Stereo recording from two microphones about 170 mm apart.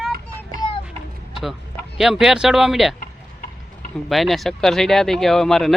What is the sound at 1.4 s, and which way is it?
Speech, centre (ahead or behind).